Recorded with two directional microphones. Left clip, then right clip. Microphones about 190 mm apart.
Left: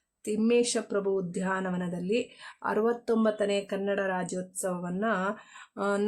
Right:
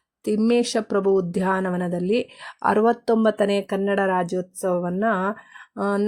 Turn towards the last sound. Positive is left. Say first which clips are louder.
# right 5 dB
turn(degrees=-30)  # may be behind; listen again after turning